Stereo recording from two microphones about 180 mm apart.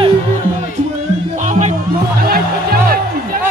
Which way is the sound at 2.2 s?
55° right (ahead or behind).